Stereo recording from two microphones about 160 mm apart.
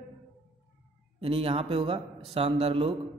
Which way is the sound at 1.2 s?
35° right (ahead or behind).